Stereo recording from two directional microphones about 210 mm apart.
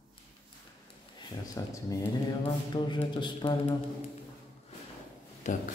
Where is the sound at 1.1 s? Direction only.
15° left (ahead or behind).